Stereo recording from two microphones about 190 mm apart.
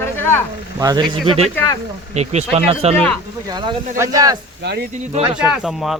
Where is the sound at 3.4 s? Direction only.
20° right (ahead or behind).